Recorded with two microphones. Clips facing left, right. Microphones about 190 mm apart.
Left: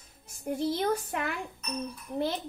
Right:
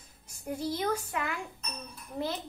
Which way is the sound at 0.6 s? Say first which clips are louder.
Left 3 dB; 35° left (ahead or behind).